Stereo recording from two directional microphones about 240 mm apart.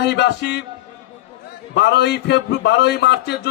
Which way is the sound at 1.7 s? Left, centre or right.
Left.